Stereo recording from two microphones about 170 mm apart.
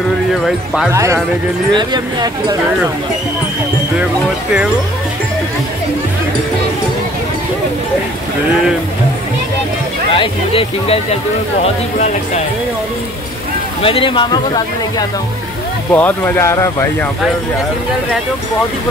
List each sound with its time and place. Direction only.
0.9 s a man's voice: 15° right (ahead or behind)
10.1 s speech: 30° left (ahead or behind)
13.8 s speech: 30° left (ahead or behind)
15.9 s speech: 10° left (ahead or behind)